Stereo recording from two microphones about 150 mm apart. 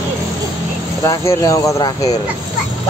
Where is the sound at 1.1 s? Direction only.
20° left (ahead or behind).